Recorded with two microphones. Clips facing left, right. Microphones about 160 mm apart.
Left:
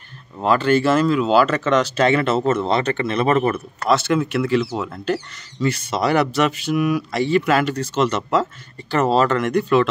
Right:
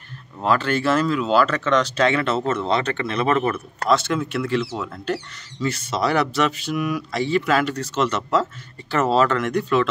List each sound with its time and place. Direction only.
0.4 s speech: centre (ahead or behind)
3.3 s speech: 25° left (ahead or behind)
3.9 s speech: 5° left (ahead or behind)
9.4 s speech: centre (ahead or behind)